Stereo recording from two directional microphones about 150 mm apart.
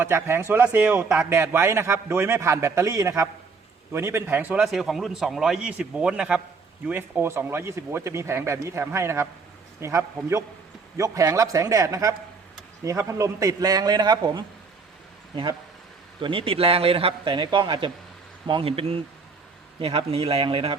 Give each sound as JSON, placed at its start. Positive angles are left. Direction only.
{"t": 0.0, "sound": "a man's voice", "side_deg": -15}
{"t": 16.2, "sound": "a man's voice", "side_deg": -35}